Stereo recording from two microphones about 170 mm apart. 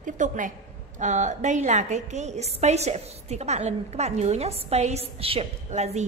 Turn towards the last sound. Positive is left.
turn(degrees=-40)  # may be behind; listen again after turning